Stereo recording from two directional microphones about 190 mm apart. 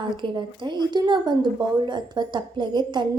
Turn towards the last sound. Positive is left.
turn(degrees=-25)  # may be behind; listen again after turning